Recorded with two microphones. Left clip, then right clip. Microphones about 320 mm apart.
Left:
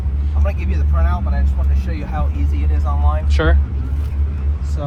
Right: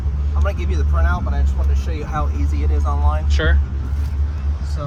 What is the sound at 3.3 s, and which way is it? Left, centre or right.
Speech, centre.